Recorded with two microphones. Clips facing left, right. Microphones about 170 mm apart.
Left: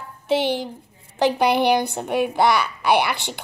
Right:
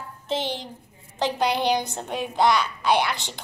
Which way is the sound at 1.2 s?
65° left (ahead or behind).